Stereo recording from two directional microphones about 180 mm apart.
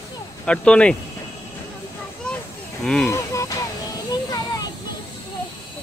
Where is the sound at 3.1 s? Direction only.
15° left (ahead or behind).